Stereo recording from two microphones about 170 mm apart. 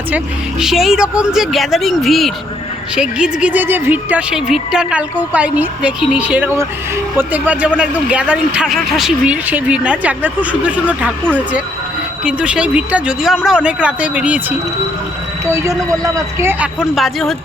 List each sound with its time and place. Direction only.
0.6 s a woman's voice: centre (ahead or behind)
12.2 s a woman's voice: 5° right (ahead or behind)
15.4 s a woman's voice: 15° right (ahead or behind)
16.9 s speech: centre (ahead or behind)